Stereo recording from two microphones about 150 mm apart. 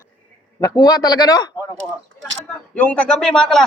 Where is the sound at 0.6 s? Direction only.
25° left (ahead or behind).